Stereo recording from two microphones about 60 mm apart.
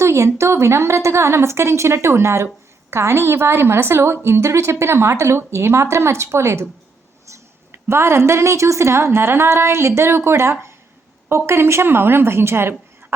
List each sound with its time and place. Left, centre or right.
0.0 s a woman's voice: right
7.7 s a woman's voice: right